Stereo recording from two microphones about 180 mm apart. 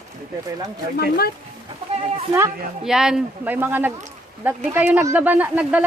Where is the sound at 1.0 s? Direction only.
60° left (ahead or behind).